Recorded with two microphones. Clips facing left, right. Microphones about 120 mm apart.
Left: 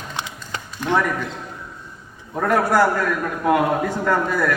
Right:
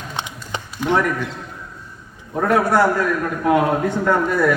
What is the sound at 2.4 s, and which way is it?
A man's voice, centre (ahead or behind).